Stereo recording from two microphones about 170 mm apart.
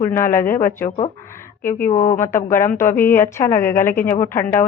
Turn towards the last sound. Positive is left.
turn(degrees=15)  # may be behind; listen again after turning